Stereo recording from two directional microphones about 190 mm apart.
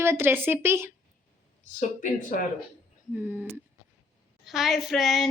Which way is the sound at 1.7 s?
45° left (ahead or behind).